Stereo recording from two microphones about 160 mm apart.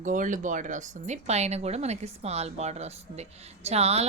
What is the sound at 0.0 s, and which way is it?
Speech, 55° right (ahead or behind).